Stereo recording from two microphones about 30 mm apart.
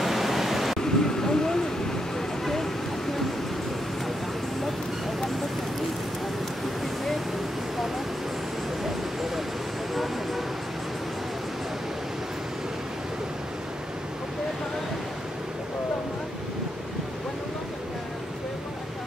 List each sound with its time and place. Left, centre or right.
0.0 s pink noise: centre
0.7 s a sound: centre
2.1 s vehicle: centre